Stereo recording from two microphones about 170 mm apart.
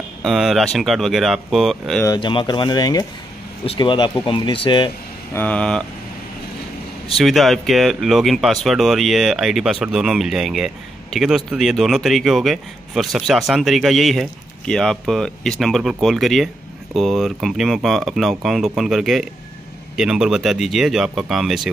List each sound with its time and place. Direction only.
0.2 s speech: centre (ahead or behind)
2.0 s speech: 30° left (ahead or behind)
5.3 s speech: 10° left (ahead or behind)
7.2 s speech: centre (ahead or behind)